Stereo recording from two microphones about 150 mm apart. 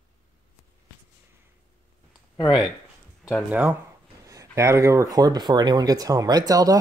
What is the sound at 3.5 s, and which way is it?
Speech, 10° right (ahead or behind).